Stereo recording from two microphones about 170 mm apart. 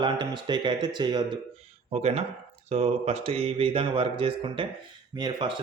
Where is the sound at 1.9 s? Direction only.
35° right (ahead or behind).